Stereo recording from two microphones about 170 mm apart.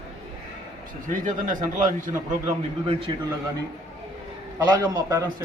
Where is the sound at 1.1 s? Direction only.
50° right (ahead or behind).